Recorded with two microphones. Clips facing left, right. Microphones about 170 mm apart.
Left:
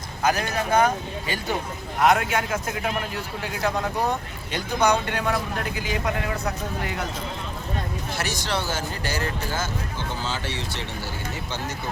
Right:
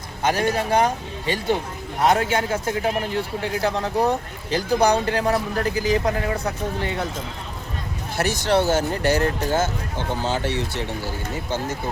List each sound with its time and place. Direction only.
0.2 s a man's voice: 30° right (ahead or behind)
2.0 s a man's voice: 30° right (ahead or behind)
8.2 s speech: 55° right (ahead or behind)